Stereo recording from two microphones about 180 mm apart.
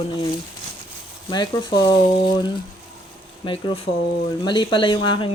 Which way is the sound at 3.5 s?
30° left (ahead or behind).